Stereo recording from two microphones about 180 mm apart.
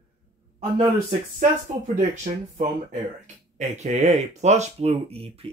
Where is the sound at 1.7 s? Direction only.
40° right (ahead or behind).